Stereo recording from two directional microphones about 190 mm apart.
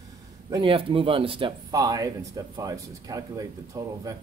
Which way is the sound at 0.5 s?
25° right (ahead or behind).